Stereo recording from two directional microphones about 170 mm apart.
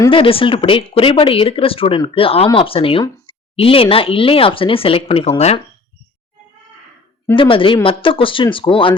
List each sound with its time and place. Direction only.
0.1 s speech: 30° left (ahead or behind)
7.3 s speech: 30° left (ahead or behind)